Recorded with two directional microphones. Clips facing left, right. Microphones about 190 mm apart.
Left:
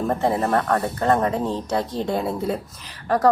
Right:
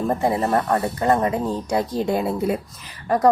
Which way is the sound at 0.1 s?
10° right (ahead or behind).